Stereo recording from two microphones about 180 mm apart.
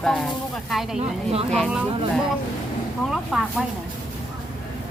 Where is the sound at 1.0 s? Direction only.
35° right (ahead or behind).